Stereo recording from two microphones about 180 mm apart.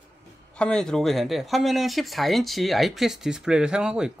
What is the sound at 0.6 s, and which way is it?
Speech, 5° left (ahead or behind).